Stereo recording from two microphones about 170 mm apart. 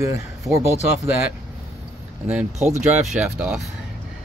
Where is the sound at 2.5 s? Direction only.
40° right (ahead or behind).